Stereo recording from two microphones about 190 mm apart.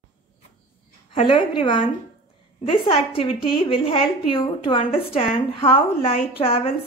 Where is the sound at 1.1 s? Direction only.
25° left (ahead or behind).